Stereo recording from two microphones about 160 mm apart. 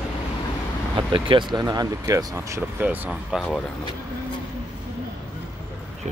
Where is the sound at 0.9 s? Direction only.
30° right (ahead or behind); by 3.1 s 10° right (ahead or behind).